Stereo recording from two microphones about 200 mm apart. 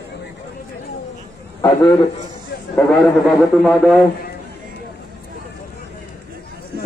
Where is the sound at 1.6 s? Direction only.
15° left (ahead or behind).